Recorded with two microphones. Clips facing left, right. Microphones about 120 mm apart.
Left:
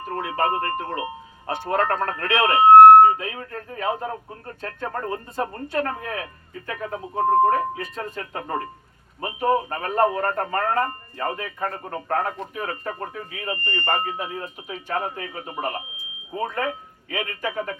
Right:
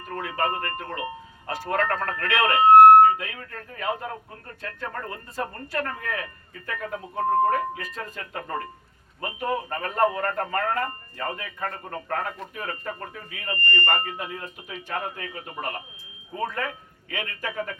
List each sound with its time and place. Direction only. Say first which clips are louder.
0.1 s speech: left 3 dB; 30° left (ahead or behind)